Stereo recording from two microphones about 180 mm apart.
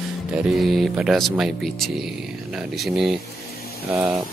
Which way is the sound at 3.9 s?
10° right (ahead or behind).